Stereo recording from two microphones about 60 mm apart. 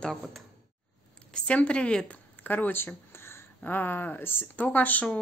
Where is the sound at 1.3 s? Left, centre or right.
Centre.